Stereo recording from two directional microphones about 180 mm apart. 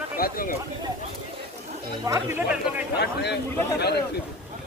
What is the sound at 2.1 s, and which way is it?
Speech, 15° right (ahead or behind).